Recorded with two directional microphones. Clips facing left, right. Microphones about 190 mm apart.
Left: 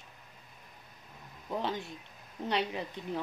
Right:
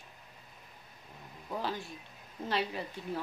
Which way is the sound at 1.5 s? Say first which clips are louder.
Left 2 dB; 20° left (ahead or behind).